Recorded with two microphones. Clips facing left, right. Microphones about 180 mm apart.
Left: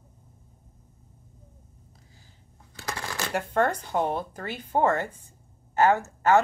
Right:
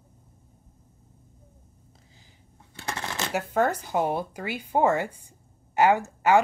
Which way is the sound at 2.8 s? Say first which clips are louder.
Right 1 dB; 25° right (ahead or behind).